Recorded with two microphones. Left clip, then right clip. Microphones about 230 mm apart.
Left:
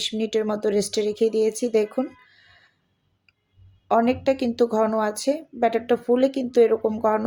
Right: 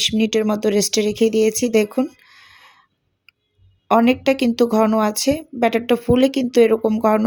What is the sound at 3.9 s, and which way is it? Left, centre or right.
Speech, right.